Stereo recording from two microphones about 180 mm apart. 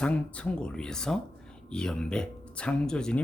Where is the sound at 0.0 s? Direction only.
5° left (ahead or behind).